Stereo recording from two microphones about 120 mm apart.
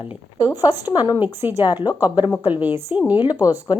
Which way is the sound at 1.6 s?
35° left (ahead or behind).